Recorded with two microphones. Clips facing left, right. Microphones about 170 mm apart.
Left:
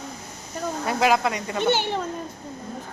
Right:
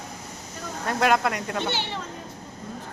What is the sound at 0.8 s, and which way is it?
Speech, centre (ahead or behind).